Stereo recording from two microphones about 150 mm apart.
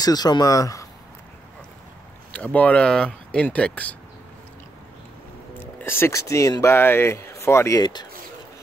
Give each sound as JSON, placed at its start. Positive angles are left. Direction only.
{"t": 0.0, "sound": "speech", "side_deg": 25}
{"t": 2.3, "sound": "speech", "side_deg": 10}
{"t": 5.8, "sound": "speech", "side_deg": 15}